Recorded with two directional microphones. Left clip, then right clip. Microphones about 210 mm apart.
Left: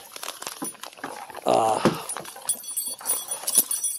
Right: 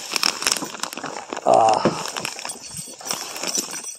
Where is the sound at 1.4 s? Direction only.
10° left (ahead or behind).